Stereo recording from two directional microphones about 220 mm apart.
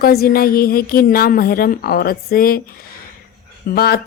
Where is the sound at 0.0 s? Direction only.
45° left (ahead or behind).